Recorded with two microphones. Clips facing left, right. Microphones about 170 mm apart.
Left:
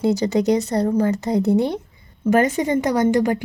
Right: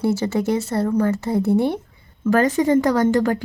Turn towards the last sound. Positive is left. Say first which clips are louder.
# even
turn(degrees=15)  # may be behind; listen again after turning